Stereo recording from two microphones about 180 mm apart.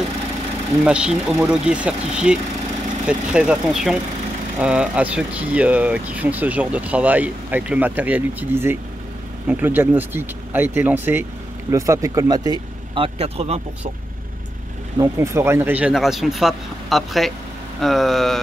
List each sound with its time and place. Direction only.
0.8 s speech: 5° right (ahead or behind); by 13.6 s 35° right (ahead or behind)
15.0 s speech: 15° right (ahead or behind); by 18.4 s centre (ahead or behind)